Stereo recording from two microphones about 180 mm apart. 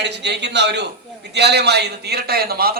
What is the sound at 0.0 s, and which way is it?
A man's voice, 70° right (ahead or behind).